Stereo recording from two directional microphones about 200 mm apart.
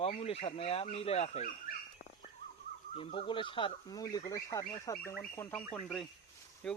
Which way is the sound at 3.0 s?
25° left (ahead or behind).